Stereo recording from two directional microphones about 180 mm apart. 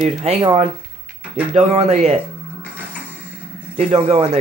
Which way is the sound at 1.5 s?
35° right (ahead or behind).